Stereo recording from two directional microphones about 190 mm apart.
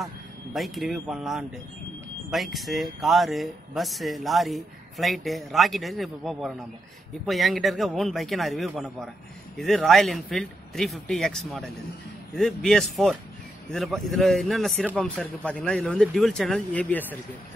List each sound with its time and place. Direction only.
0.0 s speech: centre (ahead or behind)